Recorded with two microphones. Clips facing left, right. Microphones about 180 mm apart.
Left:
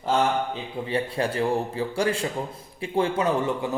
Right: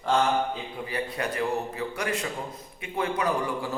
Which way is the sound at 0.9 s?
30° left (ahead or behind).